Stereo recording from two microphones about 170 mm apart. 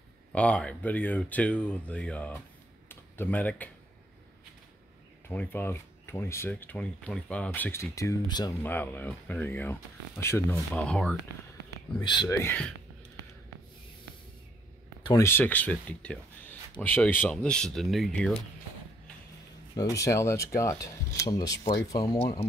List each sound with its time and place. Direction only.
0.3 s speech: 5° left (ahead or behind)
5.3 s speech: 10° left (ahead or behind)
8.6 s speech: 10° left (ahead or behind)
12.0 s speech: 25° left (ahead or behind)
12.4 s speech: 10° left (ahead or behind)
15.0 s speech: 15° left (ahead or behind)
19.7 s speech: 20° left (ahead or behind)